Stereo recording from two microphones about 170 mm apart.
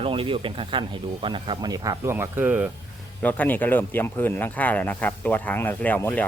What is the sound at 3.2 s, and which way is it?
Speech, 10° left (ahead or behind).